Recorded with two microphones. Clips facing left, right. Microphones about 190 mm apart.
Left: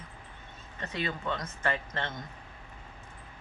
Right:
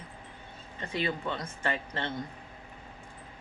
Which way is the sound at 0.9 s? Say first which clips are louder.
Right 2 dB; 30° right (ahead or behind).